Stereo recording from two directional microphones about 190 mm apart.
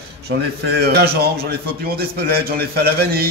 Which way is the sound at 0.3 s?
60° right (ahead or behind).